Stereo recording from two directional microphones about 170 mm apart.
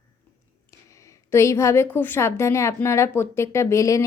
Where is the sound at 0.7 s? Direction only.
20° left (ahead or behind).